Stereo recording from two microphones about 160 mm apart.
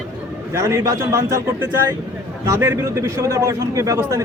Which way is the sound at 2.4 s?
15° right (ahead or behind).